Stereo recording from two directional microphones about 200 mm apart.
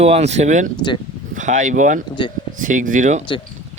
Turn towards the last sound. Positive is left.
turn(degrees=-40)  # may be behind; listen again after turning